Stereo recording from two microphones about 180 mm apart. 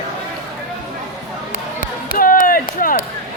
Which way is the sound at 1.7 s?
50° left (ahead or behind).